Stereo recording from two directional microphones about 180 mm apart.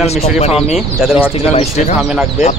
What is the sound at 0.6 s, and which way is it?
Speech, 5° right (ahead or behind).